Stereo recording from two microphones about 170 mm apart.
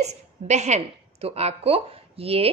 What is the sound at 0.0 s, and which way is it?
A woman's voice, 40° right (ahead or behind).